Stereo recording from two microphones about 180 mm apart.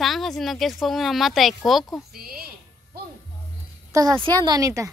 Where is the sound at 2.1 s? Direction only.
55° right (ahead or behind).